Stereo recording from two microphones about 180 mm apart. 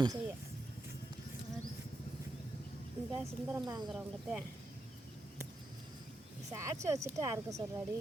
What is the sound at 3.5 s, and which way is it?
Speech, 20° right (ahead or behind).